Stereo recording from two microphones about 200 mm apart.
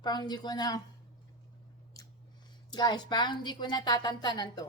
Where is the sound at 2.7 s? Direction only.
20° left (ahead or behind).